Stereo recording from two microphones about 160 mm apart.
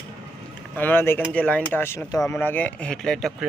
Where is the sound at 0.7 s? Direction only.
15° left (ahead or behind).